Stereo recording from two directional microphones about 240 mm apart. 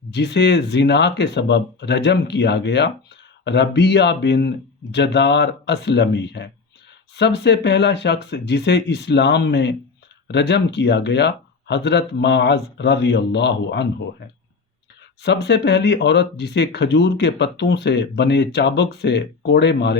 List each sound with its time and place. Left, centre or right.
0.1 s speech: left
15.2 s speech: left